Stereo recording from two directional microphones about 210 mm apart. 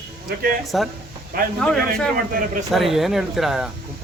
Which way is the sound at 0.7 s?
Centre (ahead or behind).